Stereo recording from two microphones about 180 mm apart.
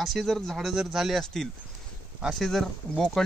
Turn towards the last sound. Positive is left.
turn(degrees=5)  # may be behind; listen again after turning